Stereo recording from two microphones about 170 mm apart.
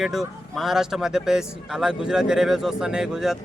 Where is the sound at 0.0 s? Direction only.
Centre (ahead or behind).